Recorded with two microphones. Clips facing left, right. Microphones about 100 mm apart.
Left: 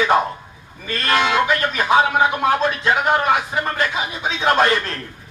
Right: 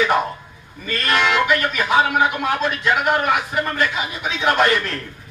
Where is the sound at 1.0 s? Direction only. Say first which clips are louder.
Left 1 dB; 30° left (ahead or behind).